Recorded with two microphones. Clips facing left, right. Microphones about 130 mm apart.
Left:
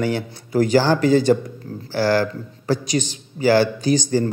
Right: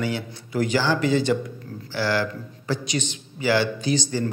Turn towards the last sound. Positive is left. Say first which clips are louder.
# left 5 dB
turn(degrees=45)  # may be behind; listen again after turning